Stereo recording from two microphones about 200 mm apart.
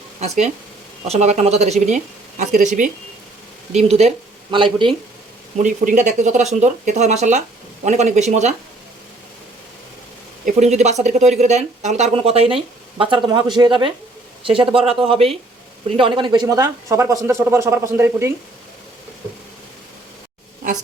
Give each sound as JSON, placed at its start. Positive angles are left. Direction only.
{"t": 0.2, "sound": "speech", "side_deg": -35}
{"t": 5.5, "sound": "speech", "side_deg": -40}
{"t": 10.4, "sound": "speech", "side_deg": -35}